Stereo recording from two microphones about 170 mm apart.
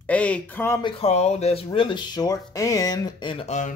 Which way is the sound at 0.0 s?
10° left (ahead or behind).